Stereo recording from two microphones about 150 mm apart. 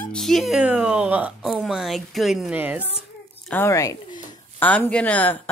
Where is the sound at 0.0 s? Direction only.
5° left (ahead or behind).